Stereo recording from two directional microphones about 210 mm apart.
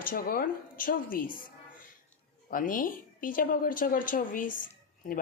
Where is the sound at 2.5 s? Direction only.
40° left (ahead or behind).